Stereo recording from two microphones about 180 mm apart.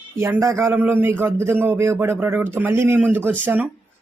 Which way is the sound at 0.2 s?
15° right (ahead or behind).